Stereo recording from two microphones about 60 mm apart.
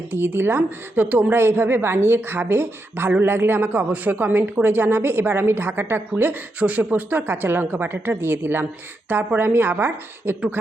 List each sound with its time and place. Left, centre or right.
0.1 s a woman's voice: right
1.0 s a woman's voice: right
1.3 s a woman's voice: right